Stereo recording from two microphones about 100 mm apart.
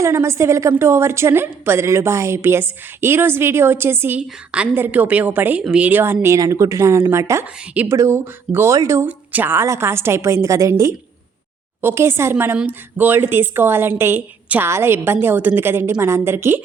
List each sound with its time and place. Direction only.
0.0 s a woman's voice: 30° right (ahead or behind)
4.2 s a woman's voice: 10° right (ahead or behind)
6.2 s a woman's voice: 35° right (ahead or behind)
9.0 s a woman's voice: 20° right (ahead or behind)